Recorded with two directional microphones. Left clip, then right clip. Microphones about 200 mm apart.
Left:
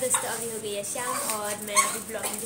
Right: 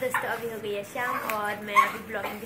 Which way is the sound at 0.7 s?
10° left (ahead or behind).